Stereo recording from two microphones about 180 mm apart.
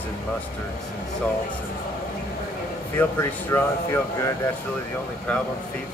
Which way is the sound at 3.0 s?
10° left (ahead or behind).